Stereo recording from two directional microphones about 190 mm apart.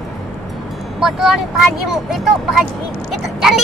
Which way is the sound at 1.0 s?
Centre (ahead or behind).